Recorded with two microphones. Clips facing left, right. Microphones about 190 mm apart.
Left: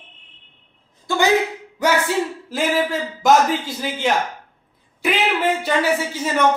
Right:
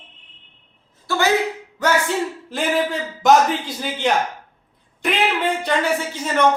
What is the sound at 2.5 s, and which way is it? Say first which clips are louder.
A man's voice: right 1 dB; centre (ahead or behind).